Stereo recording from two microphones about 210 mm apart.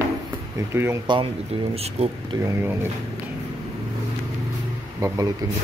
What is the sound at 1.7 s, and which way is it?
Speech, 30° right (ahead or behind).